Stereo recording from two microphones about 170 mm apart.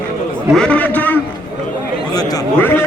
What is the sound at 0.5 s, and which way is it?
Speech, 5° left (ahead or behind).